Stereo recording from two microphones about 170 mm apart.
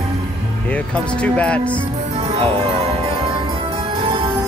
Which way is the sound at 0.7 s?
5° left (ahead or behind).